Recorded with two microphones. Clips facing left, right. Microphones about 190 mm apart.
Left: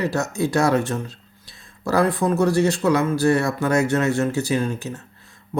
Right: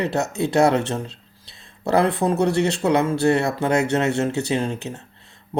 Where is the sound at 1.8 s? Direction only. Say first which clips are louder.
Right 1 dB; 25° right (ahead or behind).